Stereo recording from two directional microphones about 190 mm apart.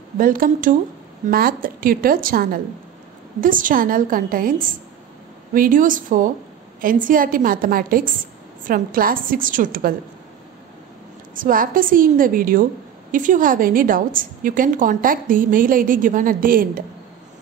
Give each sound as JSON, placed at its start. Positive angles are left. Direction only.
{"t": 0.2, "sound": "a woman's voice", "side_deg": -45}
{"t": 11.3, "sound": "a woman's voice", "side_deg": -45}